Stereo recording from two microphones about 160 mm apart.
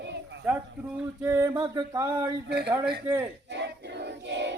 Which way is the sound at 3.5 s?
90° right.